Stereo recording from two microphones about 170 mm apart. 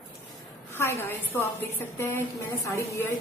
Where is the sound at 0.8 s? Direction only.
10° left (ahead or behind).